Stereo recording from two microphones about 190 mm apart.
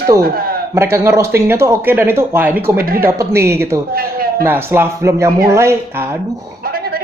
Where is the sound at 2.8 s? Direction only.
50° right (ahead or behind).